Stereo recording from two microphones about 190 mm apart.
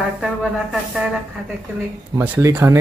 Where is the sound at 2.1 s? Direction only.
10° right (ahead or behind).